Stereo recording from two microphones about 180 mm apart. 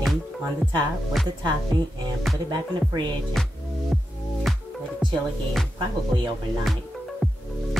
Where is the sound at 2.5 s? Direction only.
25° right (ahead or behind).